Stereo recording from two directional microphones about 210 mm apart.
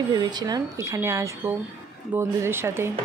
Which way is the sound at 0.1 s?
20° right (ahead or behind).